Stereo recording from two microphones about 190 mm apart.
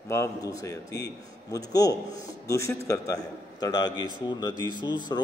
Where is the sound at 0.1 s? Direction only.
15° left (ahead or behind).